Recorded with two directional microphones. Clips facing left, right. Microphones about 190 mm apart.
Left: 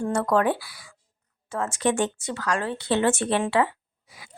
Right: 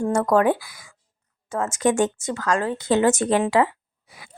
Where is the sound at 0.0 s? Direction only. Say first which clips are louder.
Right 4 dB; 45° right (ahead or behind).